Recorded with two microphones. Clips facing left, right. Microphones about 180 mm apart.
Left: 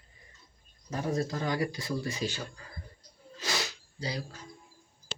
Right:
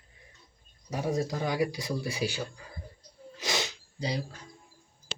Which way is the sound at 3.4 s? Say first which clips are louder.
Right 2 dB; 20° right (ahead or behind).